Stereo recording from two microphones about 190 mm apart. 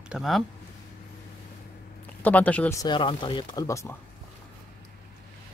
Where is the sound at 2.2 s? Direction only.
5° left (ahead or behind).